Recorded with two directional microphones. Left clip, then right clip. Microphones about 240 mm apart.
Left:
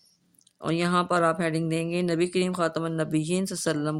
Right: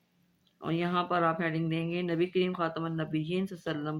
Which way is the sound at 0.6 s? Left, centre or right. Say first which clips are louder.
Left 6 dB; left.